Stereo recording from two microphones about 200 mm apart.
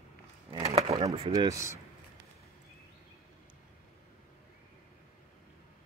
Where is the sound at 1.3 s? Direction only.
15° right (ahead or behind).